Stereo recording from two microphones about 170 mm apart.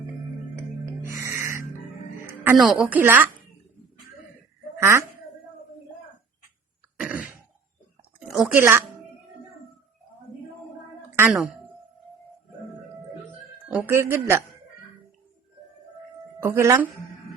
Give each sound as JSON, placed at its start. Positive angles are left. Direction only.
{"t": 0.9, "sound": "music", "side_deg": -15}
{"t": 2.6, "sound": "speech", "side_deg": -5}
{"t": 4.8, "sound": "speech", "side_deg": -15}
{"t": 7.0, "sound": "throat clearing", "side_deg": -10}
{"t": 8.2, "sound": "a sound", "side_deg": -5}
{"t": 11.3, "sound": "speech", "side_deg": -10}
{"t": 13.7, "sound": "speech", "side_deg": -10}
{"t": 16.4, "sound": "speech", "side_deg": -15}